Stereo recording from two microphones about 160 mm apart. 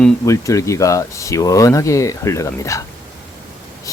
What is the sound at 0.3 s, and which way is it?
Speech, 20° left (ahead or behind).